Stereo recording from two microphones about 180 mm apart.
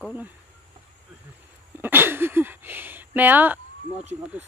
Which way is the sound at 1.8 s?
10° right (ahead or behind).